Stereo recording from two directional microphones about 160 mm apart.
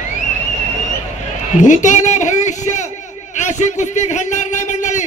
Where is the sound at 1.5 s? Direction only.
50° left (ahead or behind).